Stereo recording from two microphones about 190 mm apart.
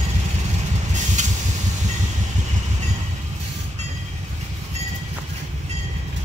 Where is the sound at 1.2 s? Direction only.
40° right (ahead or behind).